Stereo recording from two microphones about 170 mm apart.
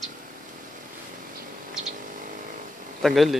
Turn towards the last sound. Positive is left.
turn(degrees=0)  # may be behind; listen again after turning